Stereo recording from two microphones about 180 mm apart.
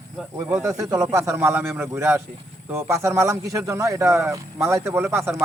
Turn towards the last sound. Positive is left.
turn(degrees=-10)  # may be behind; listen again after turning